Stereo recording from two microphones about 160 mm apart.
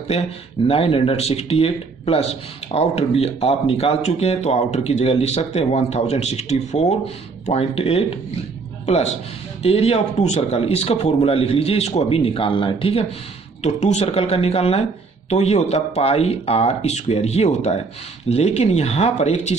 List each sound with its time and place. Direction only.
0.7 s a man's voice: 35° left (ahead or behind)